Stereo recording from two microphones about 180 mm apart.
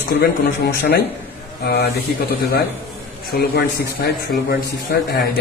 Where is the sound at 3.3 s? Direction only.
60° left (ahead or behind).